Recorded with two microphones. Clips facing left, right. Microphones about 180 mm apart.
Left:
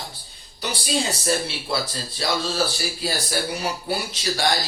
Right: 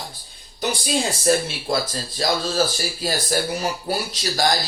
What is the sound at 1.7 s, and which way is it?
Speech, 45° right (ahead or behind).